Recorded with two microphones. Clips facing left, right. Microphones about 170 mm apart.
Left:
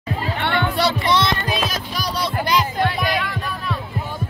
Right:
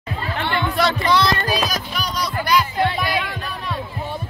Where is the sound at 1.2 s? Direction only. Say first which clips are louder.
Right 2 dB; 25° left (ahead or behind).